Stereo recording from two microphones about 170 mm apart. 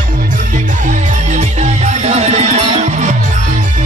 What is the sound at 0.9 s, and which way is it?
Music, 40° right (ahead or behind).